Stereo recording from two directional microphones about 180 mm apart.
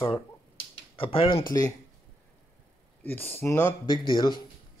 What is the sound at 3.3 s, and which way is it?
Speech, 10° left (ahead or behind).